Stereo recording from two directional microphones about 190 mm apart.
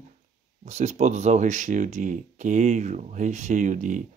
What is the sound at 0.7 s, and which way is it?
Speech, 35° right (ahead or behind).